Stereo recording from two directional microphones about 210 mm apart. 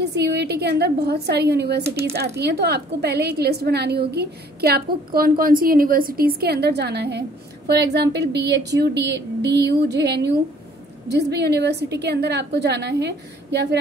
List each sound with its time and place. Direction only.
0.0 s a woman's voice: 50° right (ahead or behind)